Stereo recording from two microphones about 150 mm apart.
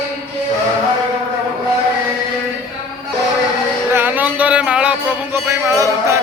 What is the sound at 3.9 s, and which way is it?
Music, 10° right (ahead or behind).